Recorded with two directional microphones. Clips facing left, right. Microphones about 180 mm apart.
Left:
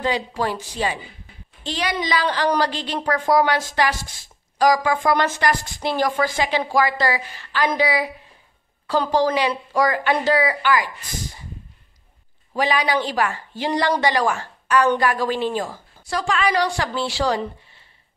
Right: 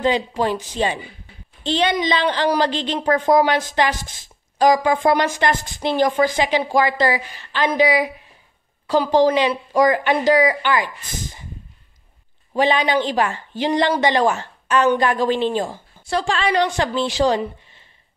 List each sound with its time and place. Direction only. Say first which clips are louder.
0.0 s speech: right 4 dB; 20° right (ahead or behind)
12.5 s a woman's voice: right 3 dB; 25° right (ahead or behind)